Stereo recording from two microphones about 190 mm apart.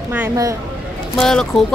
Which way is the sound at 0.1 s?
15° right (ahead or behind).